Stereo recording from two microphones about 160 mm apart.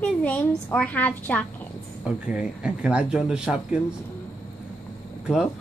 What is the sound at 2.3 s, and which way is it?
Speech, 5° right (ahead or behind).